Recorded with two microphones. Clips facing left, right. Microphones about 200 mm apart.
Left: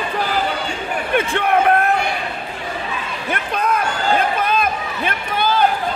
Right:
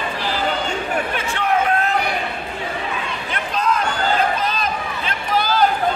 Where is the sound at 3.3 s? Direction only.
55° left (ahead or behind).